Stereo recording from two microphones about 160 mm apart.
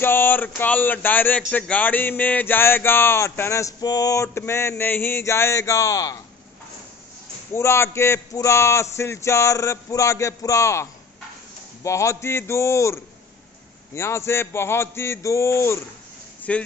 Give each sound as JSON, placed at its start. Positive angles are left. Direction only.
{"t": 0.0, "sound": "speech", "side_deg": 10}
{"t": 7.5, "sound": "speech", "side_deg": 15}